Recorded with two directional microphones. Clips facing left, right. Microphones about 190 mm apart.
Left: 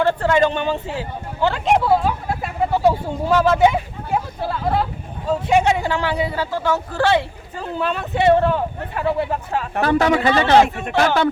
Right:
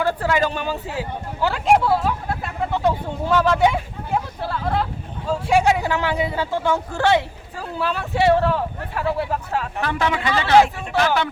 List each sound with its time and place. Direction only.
0.1 s speech: 5° right (ahead or behind)
7.6 s speech: 5° right (ahead or behind)
9.8 s a man's voice: 40° left (ahead or behind)
10.8 s speech: 50° left (ahead or behind)